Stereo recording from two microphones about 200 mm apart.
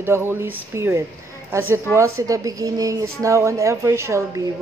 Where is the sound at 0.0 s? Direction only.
10° right (ahead or behind).